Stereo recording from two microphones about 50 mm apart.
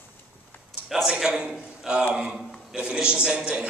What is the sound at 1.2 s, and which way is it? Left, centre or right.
A man's voice, centre.